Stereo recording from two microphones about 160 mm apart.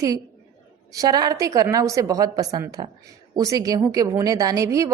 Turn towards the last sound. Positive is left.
turn(degrees=-20)  # may be behind; listen again after turning